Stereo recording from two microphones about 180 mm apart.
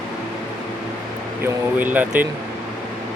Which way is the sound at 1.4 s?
10° right (ahead or behind).